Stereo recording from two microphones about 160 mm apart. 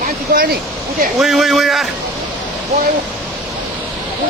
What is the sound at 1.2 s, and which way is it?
Speech, centre (ahead or behind).